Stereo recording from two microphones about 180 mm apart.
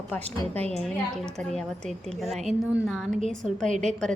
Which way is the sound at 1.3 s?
Centre (ahead or behind).